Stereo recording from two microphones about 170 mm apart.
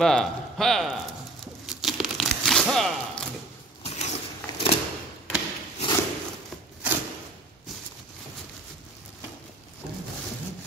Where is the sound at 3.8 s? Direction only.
40° left (ahead or behind).